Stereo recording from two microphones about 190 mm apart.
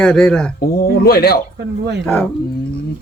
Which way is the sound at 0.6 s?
55° left (ahead or behind).